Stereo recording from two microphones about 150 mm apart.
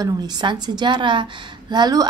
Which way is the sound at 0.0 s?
30° right (ahead or behind).